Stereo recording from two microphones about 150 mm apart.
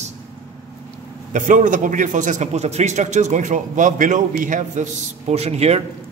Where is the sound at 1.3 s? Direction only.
55° right (ahead or behind).